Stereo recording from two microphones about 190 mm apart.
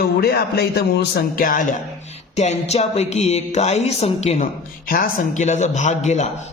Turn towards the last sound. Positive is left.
turn(degrees=35)  # may be behind; listen again after turning